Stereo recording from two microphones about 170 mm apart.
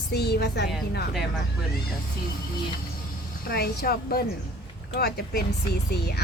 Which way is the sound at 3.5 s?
65° left (ahead or behind).